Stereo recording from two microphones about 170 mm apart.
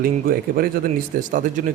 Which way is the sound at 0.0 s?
60° right (ahead or behind).